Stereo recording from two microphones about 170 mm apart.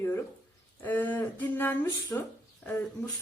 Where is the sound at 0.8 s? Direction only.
10° left (ahead or behind).